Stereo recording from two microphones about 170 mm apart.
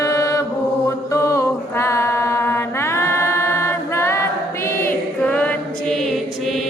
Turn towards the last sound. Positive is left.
turn(degrees=0)  # may be behind; listen again after turning